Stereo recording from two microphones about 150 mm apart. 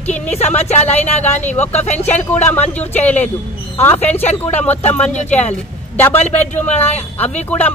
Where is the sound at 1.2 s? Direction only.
10° left (ahead or behind).